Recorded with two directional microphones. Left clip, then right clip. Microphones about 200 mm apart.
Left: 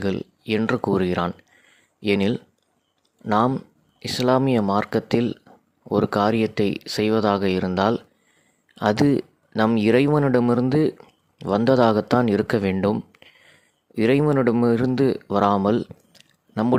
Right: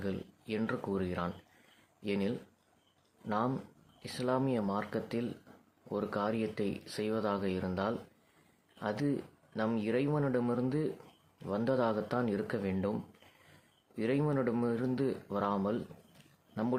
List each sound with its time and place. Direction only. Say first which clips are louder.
0.0 s speech: left 13 dB; 50° left (ahead or behind)